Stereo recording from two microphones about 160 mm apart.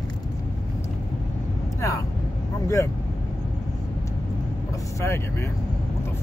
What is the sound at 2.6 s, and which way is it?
Speech, 20° left (ahead or behind).